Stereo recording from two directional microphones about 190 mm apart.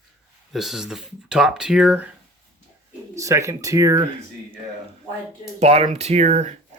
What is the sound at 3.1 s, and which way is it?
Speech, 15° right (ahead or behind).